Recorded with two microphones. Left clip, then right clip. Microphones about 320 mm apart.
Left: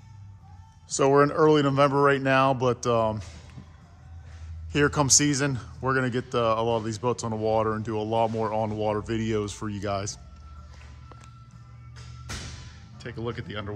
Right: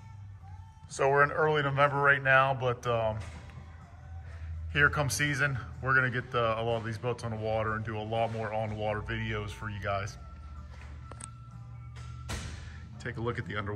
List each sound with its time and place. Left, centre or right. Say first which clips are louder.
0.8 s speech: left 5 dB; left
4.7 s speech: left 4 dB; centre
13.0 s speech: left 1 dB; centre